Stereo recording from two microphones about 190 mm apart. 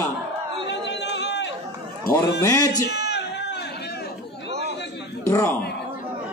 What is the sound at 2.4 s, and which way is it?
Speech, 20° left (ahead or behind).